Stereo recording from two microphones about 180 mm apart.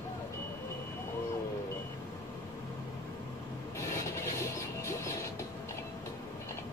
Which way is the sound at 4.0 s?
15° left (ahead or behind).